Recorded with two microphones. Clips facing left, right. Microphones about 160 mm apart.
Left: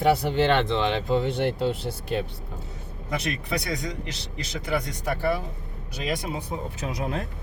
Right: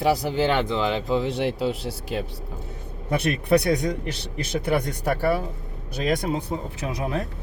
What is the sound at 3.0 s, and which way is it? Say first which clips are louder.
Speech: right 7 dB; 55° right (ahead or behind).